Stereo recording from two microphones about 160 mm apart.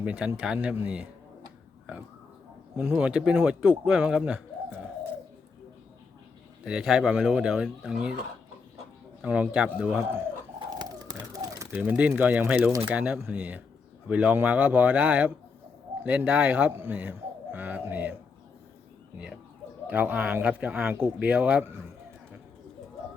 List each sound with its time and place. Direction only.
0.0 s speech: 5° right (ahead or behind)
2.7 s speech: 10° right (ahead or behind)
6.7 s speech: 5° right (ahead or behind)
9.2 s speech: 10° right (ahead or behind)
10.7 s bird: 25° right (ahead or behind)
11.7 s speech: 10° right (ahead or behind)
19.9 s speech: 10° right (ahead or behind)